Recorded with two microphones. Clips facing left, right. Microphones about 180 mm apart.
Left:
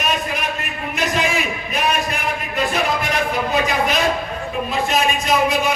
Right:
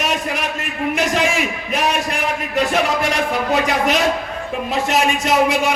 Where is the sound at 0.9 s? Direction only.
85° right.